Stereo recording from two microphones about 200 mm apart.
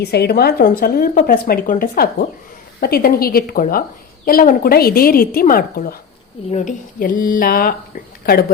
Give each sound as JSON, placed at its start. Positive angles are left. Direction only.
{"t": 0.0, "sound": "a woman's voice", "side_deg": 55}